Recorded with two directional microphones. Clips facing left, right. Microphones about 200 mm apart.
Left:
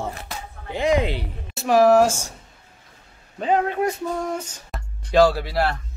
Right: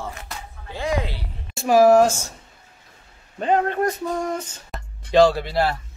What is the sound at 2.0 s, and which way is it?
Speech, 10° left (ahead or behind).